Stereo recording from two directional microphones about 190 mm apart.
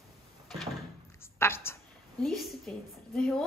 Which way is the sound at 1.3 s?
15° left (ahead or behind).